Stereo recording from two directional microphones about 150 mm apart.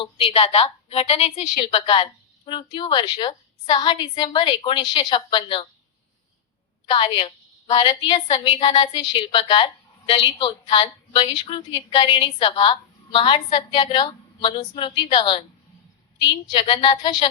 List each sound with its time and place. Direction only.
0.0 s a woman's voice: 35° left (ahead or behind)
6.9 s a woman's voice: 35° left (ahead or behind)
16.5 s a woman's voice: 30° left (ahead or behind)